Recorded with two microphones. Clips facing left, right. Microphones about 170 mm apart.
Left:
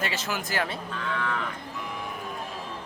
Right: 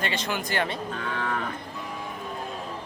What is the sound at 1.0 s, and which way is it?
Moo, 50° right (ahead or behind).